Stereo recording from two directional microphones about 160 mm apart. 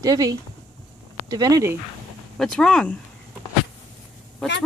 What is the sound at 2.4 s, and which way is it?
Speech, 5° left (ahead or behind).